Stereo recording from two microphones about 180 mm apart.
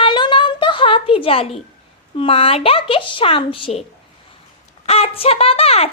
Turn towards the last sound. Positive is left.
turn(degrees=35)  # may be behind; listen again after turning